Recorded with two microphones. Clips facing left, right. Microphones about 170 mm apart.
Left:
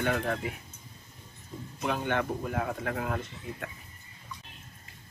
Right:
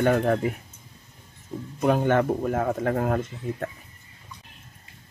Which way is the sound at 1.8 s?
45° right (ahead or behind).